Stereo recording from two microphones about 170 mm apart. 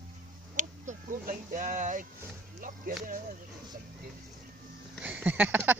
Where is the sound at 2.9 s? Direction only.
55° right (ahead or behind).